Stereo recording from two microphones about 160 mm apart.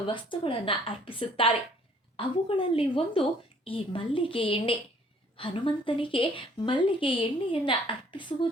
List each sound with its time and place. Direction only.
0.1 s a woman's voice: 30° left (ahead or behind)